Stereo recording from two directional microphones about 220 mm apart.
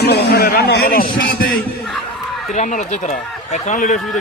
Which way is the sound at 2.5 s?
35° left (ahead or behind).